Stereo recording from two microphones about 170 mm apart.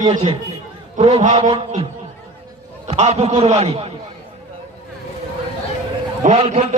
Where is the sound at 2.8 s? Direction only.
40° right (ahead or behind).